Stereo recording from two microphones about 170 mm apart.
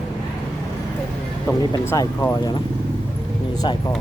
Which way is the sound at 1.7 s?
20° left (ahead or behind).